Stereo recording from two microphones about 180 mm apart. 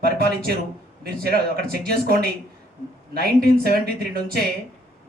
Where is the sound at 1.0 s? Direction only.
60° right (ahead or behind).